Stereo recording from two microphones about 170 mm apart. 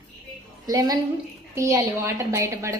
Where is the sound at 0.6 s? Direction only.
20° right (ahead or behind).